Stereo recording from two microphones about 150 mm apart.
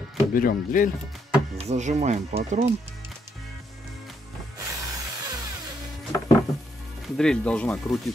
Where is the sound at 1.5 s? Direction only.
50° right (ahead or behind).